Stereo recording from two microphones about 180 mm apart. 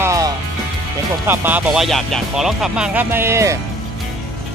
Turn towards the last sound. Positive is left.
turn(degrees=-15)  # may be behind; listen again after turning